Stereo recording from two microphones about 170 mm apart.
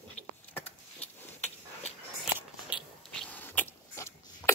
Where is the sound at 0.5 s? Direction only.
10° left (ahead or behind).